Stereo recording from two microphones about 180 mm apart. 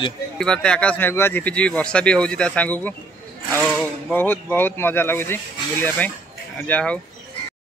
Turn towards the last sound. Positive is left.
turn(degrees=5)  # may be behind; listen again after turning